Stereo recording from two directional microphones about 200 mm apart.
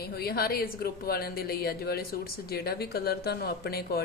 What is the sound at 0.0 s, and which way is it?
Speech, 50° left (ahead or behind).